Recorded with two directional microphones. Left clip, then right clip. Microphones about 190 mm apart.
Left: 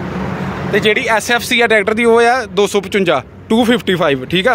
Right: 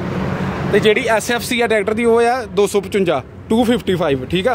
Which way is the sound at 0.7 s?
20° right (ahead or behind).